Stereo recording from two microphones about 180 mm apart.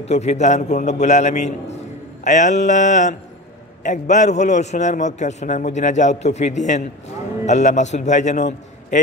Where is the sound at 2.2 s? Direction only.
45° left (ahead or behind).